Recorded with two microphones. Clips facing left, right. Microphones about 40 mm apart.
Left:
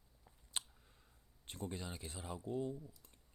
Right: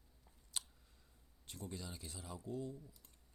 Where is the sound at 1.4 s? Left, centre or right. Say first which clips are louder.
Left 3 dB; left.